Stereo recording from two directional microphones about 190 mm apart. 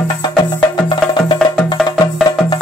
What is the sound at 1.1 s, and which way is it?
Music, 25° left (ahead or behind).